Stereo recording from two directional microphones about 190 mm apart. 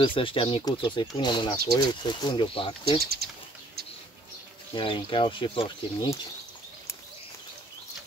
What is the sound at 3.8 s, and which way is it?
Bird, 55° right (ahead or behind).